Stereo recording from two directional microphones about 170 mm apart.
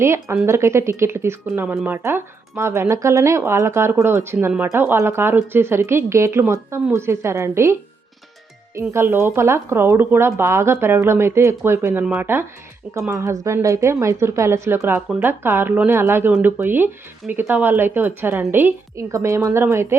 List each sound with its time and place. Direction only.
0.0 s speech: 15° right (ahead or behind)